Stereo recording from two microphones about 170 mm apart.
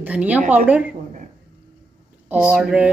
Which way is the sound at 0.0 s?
10° right (ahead or behind).